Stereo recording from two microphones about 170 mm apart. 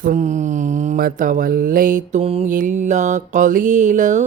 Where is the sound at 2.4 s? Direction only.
50° right (ahead or behind).